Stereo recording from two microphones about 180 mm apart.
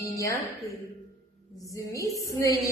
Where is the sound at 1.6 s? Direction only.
20° left (ahead or behind).